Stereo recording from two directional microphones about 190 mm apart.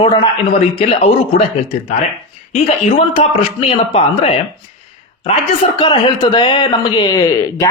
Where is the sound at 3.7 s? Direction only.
30° left (ahead or behind).